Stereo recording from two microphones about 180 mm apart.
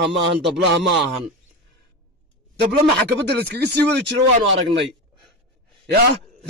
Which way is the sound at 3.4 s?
70° right (ahead or behind).